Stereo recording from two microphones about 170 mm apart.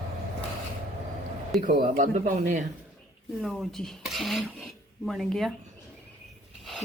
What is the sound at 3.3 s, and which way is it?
Speech, centre (ahead or behind).